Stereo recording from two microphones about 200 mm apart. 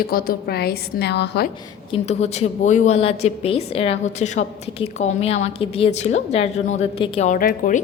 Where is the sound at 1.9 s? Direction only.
35° left (ahead or behind).